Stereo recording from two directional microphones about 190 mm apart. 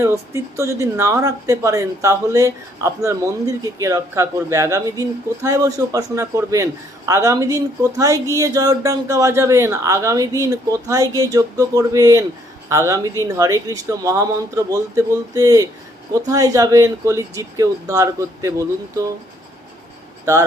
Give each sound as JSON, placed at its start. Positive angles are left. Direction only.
{"t": 0.0, "sound": "speech", "side_deg": -15}